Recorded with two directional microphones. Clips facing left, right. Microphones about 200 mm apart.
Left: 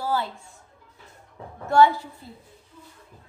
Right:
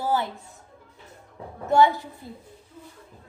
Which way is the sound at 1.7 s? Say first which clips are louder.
Left 1 dB; 15° right (ahead or behind).